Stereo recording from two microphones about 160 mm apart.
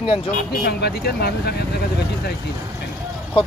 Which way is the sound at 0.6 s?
90° left.